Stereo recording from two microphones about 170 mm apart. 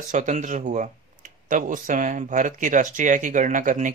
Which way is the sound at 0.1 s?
45° right (ahead or behind).